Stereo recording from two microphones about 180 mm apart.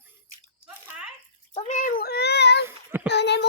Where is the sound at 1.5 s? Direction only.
40° left (ahead or behind); by 2.6 s 70° left (ahead or behind).